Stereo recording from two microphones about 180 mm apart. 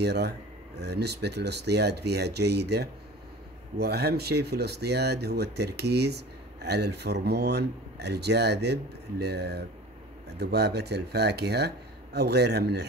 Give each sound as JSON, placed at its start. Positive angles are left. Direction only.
{"t": 0.0, "sound": "speech", "side_deg": -65}